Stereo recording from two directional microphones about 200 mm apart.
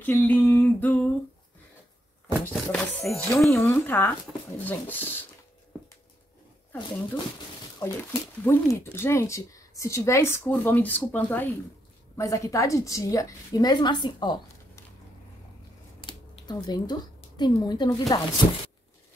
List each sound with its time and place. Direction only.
0.0 s speech: 10° left (ahead or behind)
2.5 s speech: centre (ahead or behind)
3.5 s speech: 10° left (ahead or behind)
7.8 s speech: 10° left (ahead or behind)
16.1 s a sound: 20° left (ahead or behind)
17.4 s speech: 20° left (ahead or behind)